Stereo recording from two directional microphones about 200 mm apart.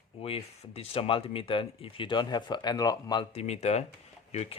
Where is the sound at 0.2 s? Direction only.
30° left (ahead or behind).